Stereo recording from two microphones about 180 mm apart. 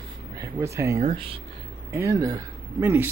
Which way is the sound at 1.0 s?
30° right (ahead or behind).